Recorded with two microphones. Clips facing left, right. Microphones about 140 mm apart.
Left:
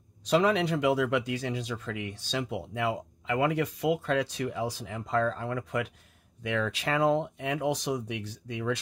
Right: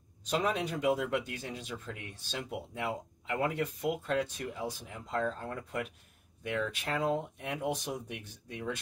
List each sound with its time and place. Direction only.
0.3 s speech: 85° left